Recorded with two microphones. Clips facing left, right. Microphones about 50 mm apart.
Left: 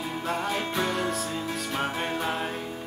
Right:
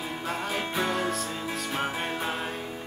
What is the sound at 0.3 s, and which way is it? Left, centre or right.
Music, centre.